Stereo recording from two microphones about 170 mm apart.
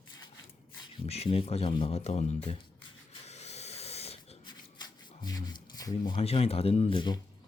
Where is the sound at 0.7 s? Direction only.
35° left (ahead or behind).